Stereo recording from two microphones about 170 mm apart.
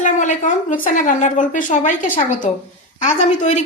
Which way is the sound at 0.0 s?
45° left (ahead or behind).